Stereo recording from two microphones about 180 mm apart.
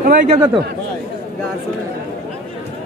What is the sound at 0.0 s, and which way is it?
Speech, 55° right (ahead or behind).